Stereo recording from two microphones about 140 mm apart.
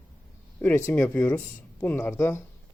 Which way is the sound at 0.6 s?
15° left (ahead or behind).